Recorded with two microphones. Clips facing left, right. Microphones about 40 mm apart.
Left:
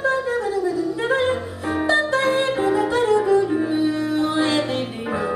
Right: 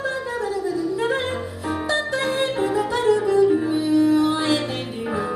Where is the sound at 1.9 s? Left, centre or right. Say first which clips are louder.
Left 5 dB; left.